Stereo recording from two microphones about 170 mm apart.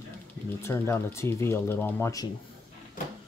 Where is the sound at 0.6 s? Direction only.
15° left (ahead or behind).